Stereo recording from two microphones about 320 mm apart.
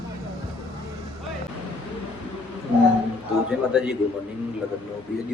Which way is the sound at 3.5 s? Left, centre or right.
Centre.